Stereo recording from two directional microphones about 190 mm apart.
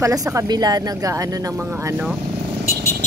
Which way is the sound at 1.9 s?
5° right (ahead or behind).